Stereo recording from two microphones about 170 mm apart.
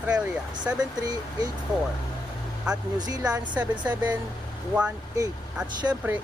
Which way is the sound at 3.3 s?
10° right (ahead or behind).